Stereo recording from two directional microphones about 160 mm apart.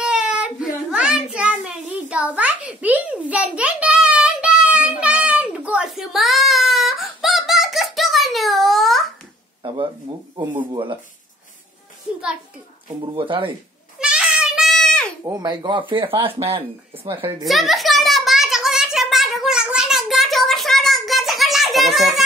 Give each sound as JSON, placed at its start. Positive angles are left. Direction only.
{"t": 0.0, "sound": "child singing", "side_deg": -5}
{"t": 9.6, "sound": "speech", "side_deg": -30}
{"t": 12.8, "sound": "speech", "side_deg": -30}
{"t": 13.9, "sound": "a sound", "side_deg": -5}
{"t": 15.2, "sound": "speech", "side_deg": -25}
{"t": 16.3, "sound": "speech", "side_deg": -15}
{"t": 17.2, "sound": "speech", "side_deg": -35}
{"t": 17.5, "sound": "a sound", "side_deg": 0}